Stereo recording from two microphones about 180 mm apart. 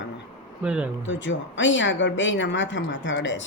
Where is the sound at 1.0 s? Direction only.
90° left.